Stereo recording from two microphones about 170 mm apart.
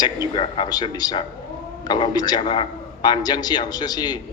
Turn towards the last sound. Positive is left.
turn(degrees=25)  # may be behind; listen again after turning